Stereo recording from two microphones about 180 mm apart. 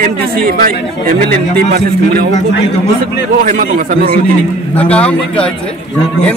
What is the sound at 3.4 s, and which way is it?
Speech, 45° right (ahead or behind).